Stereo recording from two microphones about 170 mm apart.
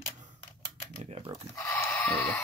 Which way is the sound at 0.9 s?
45° right (ahead or behind).